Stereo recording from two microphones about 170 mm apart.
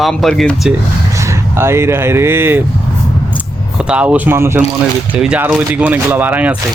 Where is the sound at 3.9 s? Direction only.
5° right (ahead or behind).